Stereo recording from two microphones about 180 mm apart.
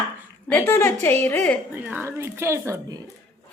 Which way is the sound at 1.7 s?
10° right (ahead or behind).